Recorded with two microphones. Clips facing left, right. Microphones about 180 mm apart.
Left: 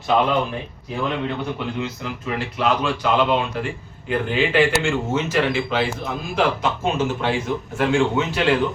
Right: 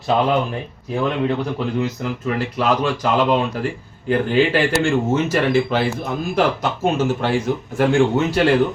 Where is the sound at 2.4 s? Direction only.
40° right (ahead or behind).